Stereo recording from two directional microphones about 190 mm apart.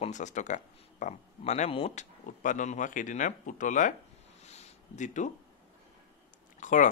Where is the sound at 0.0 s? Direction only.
40° left (ahead or behind).